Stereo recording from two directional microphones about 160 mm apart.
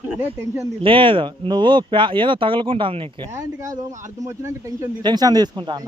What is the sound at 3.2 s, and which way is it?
Speech, 20° right (ahead or behind).